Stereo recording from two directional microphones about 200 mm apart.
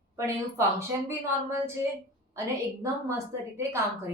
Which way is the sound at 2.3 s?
15° right (ahead or behind).